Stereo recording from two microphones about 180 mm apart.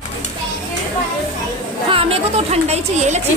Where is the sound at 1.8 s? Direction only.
30° right (ahead or behind).